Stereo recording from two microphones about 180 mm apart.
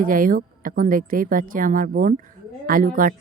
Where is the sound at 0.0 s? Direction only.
50° right (ahead or behind).